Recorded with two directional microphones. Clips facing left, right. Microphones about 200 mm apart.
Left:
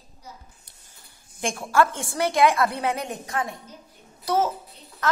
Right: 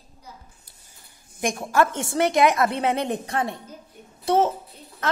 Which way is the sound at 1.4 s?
20° right (ahead or behind).